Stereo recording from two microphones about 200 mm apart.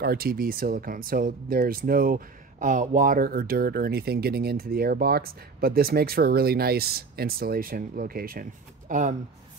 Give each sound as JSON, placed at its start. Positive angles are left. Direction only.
{"t": 0.0, "sound": "speech", "side_deg": -50}